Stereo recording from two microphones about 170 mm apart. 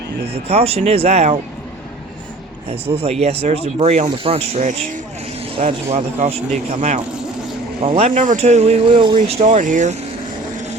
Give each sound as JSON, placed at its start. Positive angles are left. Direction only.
{"t": 0.4, "sound": "speech", "side_deg": -35}
{"t": 2.6, "sound": "speech", "side_deg": -35}
{"t": 9.6, "sound": "speech", "side_deg": -50}